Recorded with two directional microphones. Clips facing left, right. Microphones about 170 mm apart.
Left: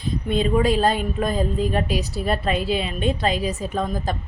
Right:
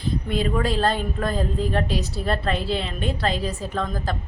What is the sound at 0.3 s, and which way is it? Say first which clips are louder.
A woman's voice: left 5 dB; 20° left (ahead or behind).